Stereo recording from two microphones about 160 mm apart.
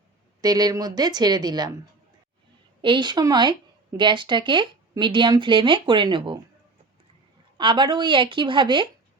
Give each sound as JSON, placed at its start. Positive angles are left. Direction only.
{"t": 0.4, "sound": "speech", "side_deg": -25}
{"t": 2.8, "sound": "speech", "side_deg": -30}
{"t": 7.6, "sound": "speech", "side_deg": -30}